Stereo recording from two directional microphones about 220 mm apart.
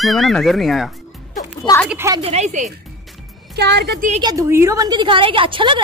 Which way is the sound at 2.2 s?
30° right (ahead or behind).